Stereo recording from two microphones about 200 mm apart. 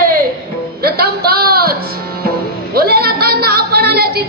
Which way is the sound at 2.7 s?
50° right (ahead or behind).